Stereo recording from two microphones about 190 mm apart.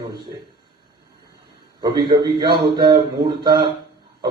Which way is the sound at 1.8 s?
25° right (ahead or behind).